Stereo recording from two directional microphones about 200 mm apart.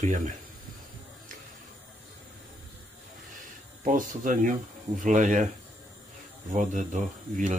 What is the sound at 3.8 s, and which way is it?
Speech, 40° right (ahead or behind).